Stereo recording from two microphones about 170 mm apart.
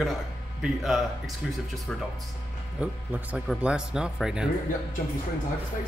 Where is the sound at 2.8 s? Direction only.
5° right (ahead or behind).